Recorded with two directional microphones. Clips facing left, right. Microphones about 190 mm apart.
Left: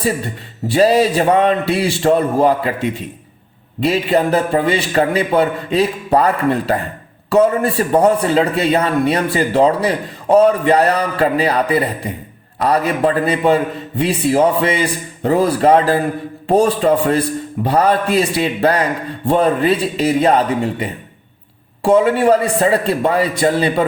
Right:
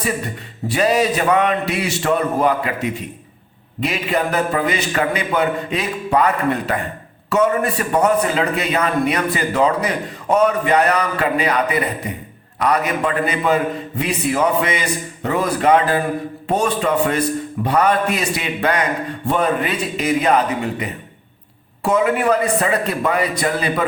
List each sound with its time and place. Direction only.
0.7 s a man's voice: 30° left (ahead or behind)